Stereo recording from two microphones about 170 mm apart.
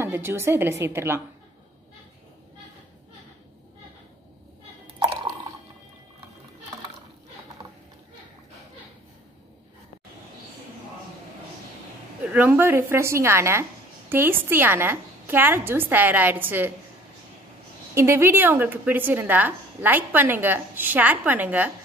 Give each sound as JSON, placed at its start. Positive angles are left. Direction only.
{"t": 0.0, "sound": "speech", "side_deg": -15}
{"t": 4.9, "sound": "a sound", "side_deg": -30}
{"t": 12.3, "sound": "speech", "side_deg": -10}
{"t": 17.9, "sound": "speech", "side_deg": -15}